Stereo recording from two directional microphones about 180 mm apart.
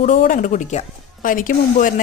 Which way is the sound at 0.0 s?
50° left (ahead or behind).